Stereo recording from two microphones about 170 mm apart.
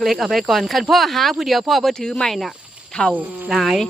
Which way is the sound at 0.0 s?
Centre (ahead or behind).